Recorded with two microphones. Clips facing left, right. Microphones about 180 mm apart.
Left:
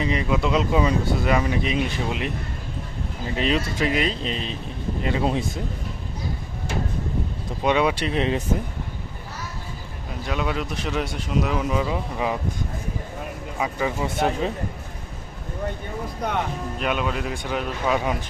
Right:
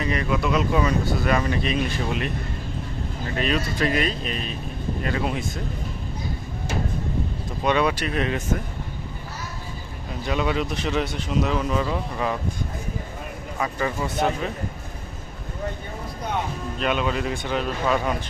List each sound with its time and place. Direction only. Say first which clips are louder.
0.0 s speech: left 1 dB; 20° left (ahead or behind)
3.3 s speech: left 1 dB; 20° left (ahead or behind)
7.6 s speech: left 1 dB; 15° left (ahead or behind)
10.2 s speech: right 2 dB; centre (ahead or behind)
13.6 s speech: left 1 dB; 10° left (ahead or behind)
16.8 s speech: right 2 dB; 5° left (ahead or behind)